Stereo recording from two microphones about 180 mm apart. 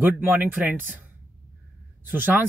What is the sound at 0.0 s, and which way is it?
Speech, 10° right (ahead or behind).